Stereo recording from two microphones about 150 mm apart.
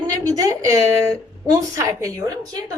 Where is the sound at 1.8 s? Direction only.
20° right (ahead or behind).